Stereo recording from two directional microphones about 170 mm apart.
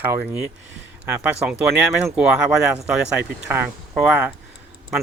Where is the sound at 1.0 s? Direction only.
10° right (ahead or behind).